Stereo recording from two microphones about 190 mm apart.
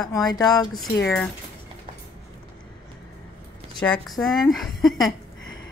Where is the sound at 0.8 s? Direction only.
Centre (ahead or behind).